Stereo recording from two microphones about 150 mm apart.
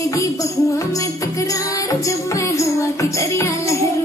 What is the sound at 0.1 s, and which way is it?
Music, 20° left (ahead or behind).